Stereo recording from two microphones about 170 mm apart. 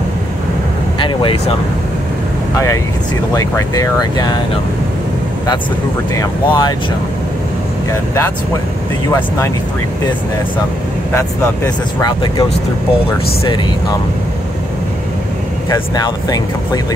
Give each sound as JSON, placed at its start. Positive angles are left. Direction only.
{"t": 0.9, "sound": "speech", "side_deg": 30}
{"t": 2.5, "sound": "speech", "side_deg": 15}
{"t": 6.1, "sound": "speech", "side_deg": 25}
{"t": 11.1, "sound": "speech", "side_deg": 20}
{"t": 15.7, "sound": "speech", "side_deg": 20}